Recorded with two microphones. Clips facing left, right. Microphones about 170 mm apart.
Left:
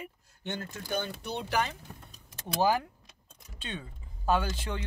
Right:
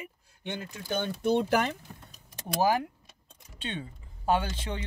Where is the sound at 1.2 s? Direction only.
45° right (ahead or behind).